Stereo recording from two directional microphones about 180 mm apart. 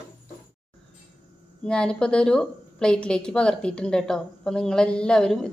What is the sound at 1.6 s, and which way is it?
A woman's voice, 5° left (ahead or behind).